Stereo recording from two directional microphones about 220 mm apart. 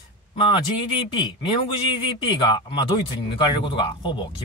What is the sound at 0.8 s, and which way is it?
Speech, 20° left (ahead or behind).